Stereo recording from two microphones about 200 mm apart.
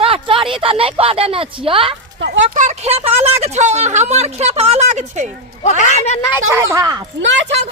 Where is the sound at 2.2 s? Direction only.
65° right (ahead or behind).